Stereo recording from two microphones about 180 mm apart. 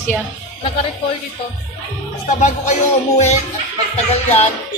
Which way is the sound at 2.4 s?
40° left (ahead or behind).